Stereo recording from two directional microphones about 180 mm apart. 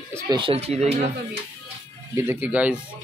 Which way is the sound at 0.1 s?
15° right (ahead or behind).